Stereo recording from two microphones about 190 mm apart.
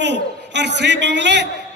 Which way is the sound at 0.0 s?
65° right (ahead or behind).